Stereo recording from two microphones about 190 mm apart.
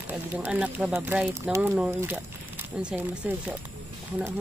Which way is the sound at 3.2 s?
5° right (ahead or behind).